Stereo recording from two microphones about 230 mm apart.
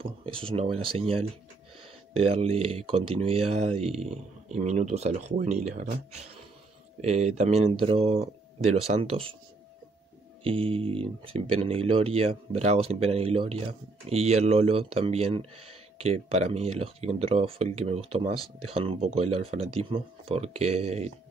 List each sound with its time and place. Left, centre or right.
0.9 s speech: right
10.4 s speech: right